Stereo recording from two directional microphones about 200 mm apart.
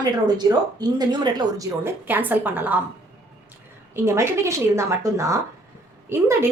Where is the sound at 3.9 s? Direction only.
15° right (ahead or behind).